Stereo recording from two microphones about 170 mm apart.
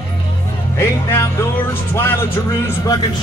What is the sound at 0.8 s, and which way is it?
Speech, 15° left (ahead or behind).